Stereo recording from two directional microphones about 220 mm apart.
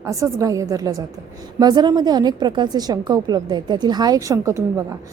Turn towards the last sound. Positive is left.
turn(degrees=-15)  # may be behind; listen again after turning